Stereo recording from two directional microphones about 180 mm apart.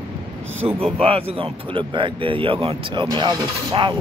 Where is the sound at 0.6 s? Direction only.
30° right (ahead or behind).